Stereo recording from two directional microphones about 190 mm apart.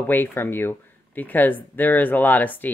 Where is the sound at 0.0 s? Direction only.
10° left (ahead or behind).